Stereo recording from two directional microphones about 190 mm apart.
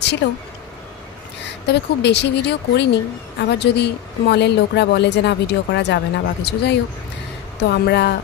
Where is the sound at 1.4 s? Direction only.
65° left (ahead or behind).